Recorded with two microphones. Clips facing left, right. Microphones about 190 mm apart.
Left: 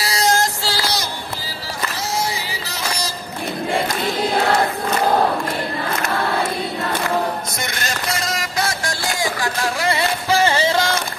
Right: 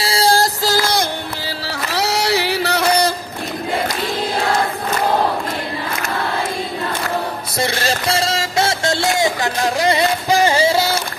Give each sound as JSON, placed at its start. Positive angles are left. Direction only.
{"t": 0.0, "sound": "child singing", "side_deg": -30}
{"t": 1.4, "sound": "a sound", "side_deg": -70}
{"t": 7.6, "sound": "music", "side_deg": -30}